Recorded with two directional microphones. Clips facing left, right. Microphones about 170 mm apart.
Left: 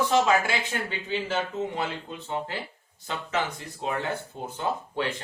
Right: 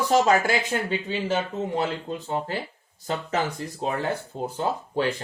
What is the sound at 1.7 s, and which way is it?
Speech, 40° right (ahead or behind).